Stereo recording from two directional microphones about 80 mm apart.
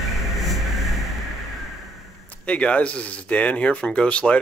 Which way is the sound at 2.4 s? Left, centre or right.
Centre.